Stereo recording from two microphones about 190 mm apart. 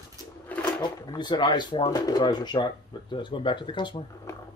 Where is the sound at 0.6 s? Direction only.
25° left (ahead or behind).